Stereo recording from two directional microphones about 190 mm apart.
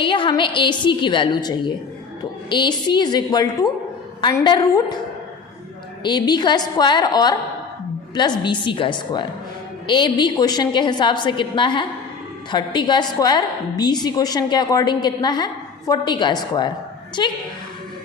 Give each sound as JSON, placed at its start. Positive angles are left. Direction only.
{"t": 0.0, "sound": "a woman's voice", "side_deg": 25}
{"t": 6.0, "sound": "a woman's voice", "side_deg": 20}